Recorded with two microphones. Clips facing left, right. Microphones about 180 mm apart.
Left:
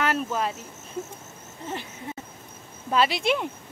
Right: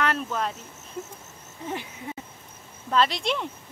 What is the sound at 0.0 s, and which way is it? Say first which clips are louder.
Cricket: left 1 dB; 5° left (ahead or behind).